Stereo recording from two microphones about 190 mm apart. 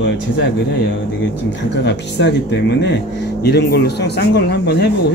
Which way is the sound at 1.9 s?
65° left (ahead or behind).